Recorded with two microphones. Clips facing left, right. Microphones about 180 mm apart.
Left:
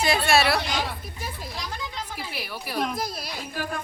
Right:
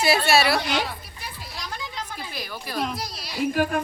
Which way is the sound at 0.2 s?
Centre (ahead or behind).